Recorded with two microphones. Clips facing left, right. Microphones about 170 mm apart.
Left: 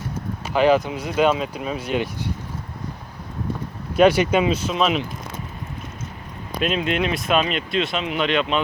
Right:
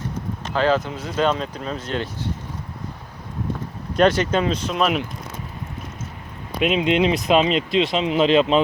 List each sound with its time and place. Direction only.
0.4 s speech: 15° left (ahead or behind)
3.9 s speech: 10° left (ahead or behind)
6.6 s speech: 20° right (ahead or behind)